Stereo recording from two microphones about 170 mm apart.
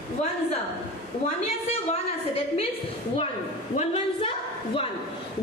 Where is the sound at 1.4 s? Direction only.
40° left (ahead or behind).